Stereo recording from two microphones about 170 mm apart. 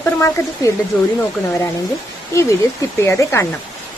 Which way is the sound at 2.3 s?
15° left (ahead or behind).